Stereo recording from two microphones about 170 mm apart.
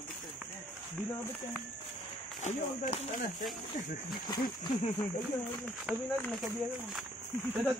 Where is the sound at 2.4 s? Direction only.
45° left (ahead or behind).